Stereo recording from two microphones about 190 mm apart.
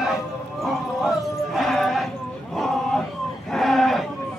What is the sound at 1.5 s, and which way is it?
Music, centre (ahead or behind).